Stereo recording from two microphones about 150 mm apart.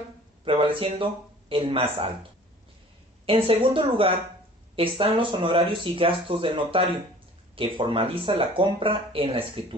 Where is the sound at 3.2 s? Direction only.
35° right (ahead or behind).